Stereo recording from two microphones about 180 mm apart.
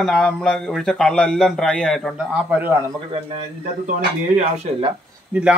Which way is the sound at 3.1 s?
30° right (ahead or behind).